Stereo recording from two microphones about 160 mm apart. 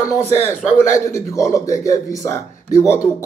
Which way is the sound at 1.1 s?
20° left (ahead or behind).